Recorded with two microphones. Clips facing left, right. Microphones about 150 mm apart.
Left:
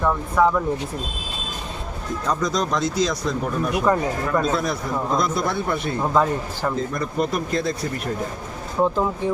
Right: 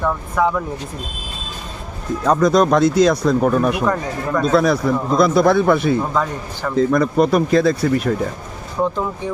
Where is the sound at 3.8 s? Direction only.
10° left (ahead or behind).